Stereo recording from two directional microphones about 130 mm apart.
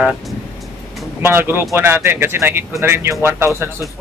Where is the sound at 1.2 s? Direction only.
15° right (ahead or behind).